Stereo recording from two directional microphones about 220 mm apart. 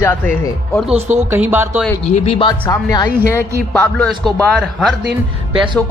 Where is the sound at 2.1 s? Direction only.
25° left (ahead or behind).